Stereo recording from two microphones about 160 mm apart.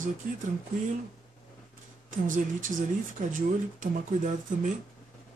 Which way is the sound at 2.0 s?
55° right (ahead or behind).